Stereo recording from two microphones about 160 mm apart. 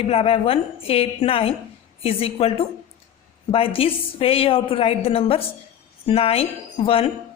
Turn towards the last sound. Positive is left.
turn(degrees=35)  # may be behind; listen again after turning